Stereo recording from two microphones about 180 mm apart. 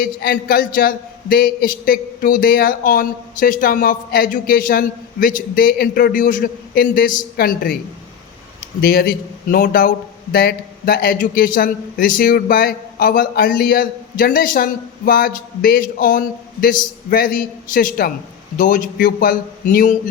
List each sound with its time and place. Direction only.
0.0 s a man's voice: 55° left (ahead or behind)
8.8 s a man's voice: 55° left (ahead or behind)